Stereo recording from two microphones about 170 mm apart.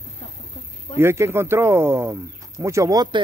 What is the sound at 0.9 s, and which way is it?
Speech, 15° right (ahead or behind).